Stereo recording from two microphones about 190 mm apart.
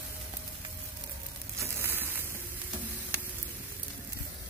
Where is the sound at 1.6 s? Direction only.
15° right (ahead or behind).